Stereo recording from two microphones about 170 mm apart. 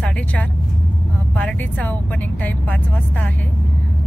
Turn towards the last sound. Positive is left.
turn(degrees=10)  # may be behind; listen again after turning